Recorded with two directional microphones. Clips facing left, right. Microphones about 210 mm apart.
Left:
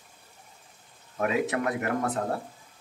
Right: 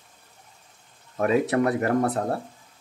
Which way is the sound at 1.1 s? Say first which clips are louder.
Right 5 dB; 35° right (ahead or behind).